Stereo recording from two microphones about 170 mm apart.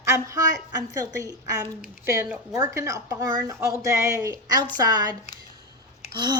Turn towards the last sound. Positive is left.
turn(degrees=-25)  # may be behind; listen again after turning